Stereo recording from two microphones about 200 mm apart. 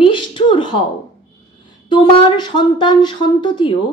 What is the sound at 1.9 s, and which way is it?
Speech, 25° left (ahead or behind).